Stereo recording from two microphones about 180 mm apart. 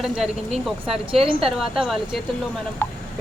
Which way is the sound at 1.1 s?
30° right (ahead or behind).